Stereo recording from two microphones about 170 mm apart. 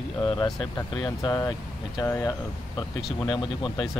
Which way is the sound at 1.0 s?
20° left (ahead or behind).